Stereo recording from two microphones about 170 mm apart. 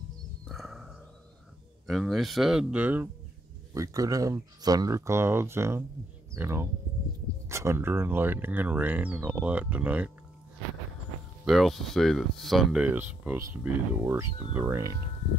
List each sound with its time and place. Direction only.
0.5 s a sound: centre (ahead or behind)
1.9 s speech: centre (ahead or behind)
11.4 s speech: centre (ahead or behind)